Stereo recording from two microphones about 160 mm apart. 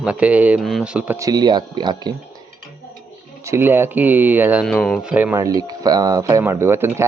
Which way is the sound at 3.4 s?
15° right (ahead or behind).